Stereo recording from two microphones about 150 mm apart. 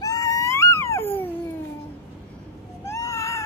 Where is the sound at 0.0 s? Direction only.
20° left (ahead or behind).